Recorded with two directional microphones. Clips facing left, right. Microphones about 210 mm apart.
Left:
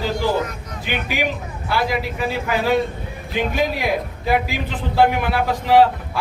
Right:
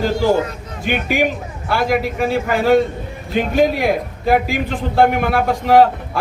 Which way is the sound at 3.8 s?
50° right (ahead or behind).